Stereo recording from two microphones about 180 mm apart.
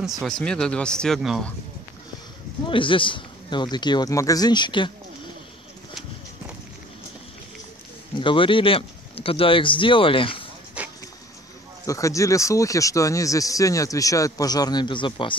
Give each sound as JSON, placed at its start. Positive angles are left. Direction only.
{"t": 0.0, "sound": "speech", "side_deg": 0}
{"t": 2.6, "sound": "speech", "side_deg": 30}
{"t": 8.2, "sound": "speech", "side_deg": 30}
{"t": 10.8, "sound": "vehicle", "side_deg": -5}
{"t": 11.8, "sound": "speech", "side_deg": 15}